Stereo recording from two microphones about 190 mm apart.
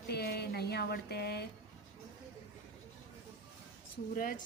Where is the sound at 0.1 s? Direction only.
55° left (ahead or behind).